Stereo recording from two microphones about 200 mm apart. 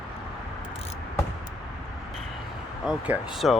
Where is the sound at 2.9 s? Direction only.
5° right (ahead or behind).